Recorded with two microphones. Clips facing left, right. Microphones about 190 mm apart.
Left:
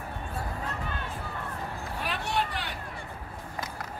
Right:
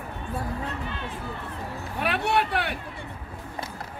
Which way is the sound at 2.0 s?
65° right (ahead or behind).